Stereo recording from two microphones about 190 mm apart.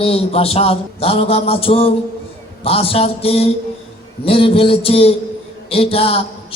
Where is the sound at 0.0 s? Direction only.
30° left (ahead or behind).